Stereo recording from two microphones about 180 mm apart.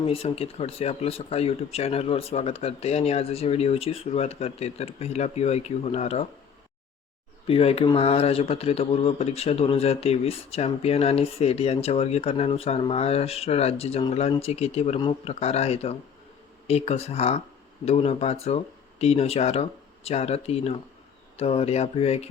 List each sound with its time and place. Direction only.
0.1 s speech: 30° left (ahead or behind)
7.4 s speech: 30° left (ahead or behind)